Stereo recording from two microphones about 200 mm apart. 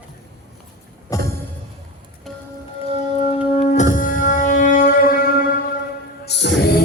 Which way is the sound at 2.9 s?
35° left (ahead or behind).